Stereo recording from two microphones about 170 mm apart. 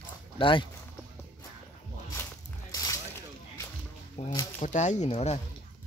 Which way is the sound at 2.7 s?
20° left (ahead or behind).